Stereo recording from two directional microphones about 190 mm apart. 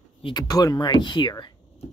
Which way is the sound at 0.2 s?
20° left (ahead or behind).